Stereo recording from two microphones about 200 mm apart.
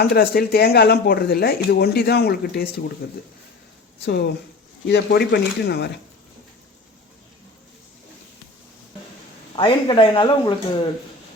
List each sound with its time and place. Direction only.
0.0 s speech: 50° left (ahead or behind)
9.6 s speech: 25° left (ahead or behind)